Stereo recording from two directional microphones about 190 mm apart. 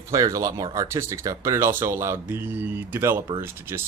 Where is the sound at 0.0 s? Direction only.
15° right (ahead or behind).